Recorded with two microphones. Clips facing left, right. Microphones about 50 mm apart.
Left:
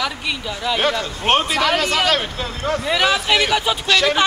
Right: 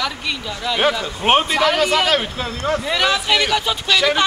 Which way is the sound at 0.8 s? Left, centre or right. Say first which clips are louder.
Right 5 dB; centre.